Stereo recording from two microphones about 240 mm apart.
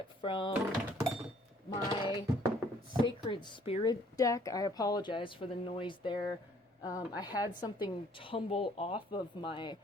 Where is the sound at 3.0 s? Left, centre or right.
Centre.